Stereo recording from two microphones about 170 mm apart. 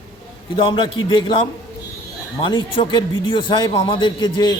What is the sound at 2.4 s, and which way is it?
Speech, 25° left (ahead or behind).